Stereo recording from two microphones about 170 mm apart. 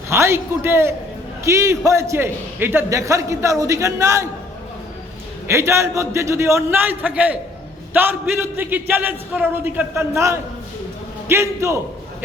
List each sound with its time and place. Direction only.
0.1 s a man's voice: 15° right (ahead or behind)
5.5 s a man's voice: 15° right (ahead or behind)